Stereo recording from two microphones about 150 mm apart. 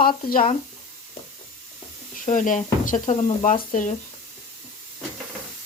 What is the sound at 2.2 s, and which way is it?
Speech, 60° left (ahead or behind).